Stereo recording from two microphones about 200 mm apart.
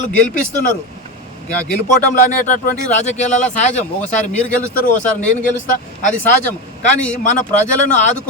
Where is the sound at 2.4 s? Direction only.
40° left (ahead or behind).